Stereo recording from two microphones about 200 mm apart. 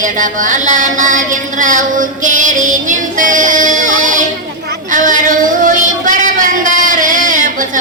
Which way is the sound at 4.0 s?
40° right (ahead or behind).